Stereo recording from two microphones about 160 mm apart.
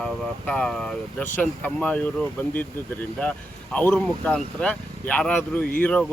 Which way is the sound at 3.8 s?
5° left (ahead or behind).